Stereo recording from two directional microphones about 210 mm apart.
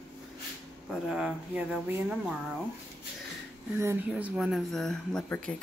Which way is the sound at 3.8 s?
10° right (ahead or behind).